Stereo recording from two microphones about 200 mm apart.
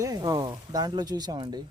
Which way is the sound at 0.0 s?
20° right (ahead or behind).